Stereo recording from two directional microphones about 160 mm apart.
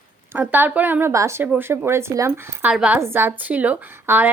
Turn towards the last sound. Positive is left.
turn(degrees=-15)  # may be behind; listen again after turning